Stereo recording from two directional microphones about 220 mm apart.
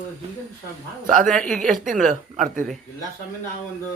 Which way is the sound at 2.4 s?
35° right (ahead or behind).